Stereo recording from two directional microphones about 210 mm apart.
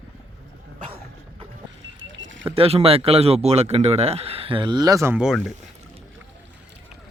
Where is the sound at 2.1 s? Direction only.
65° right (ahead or behind).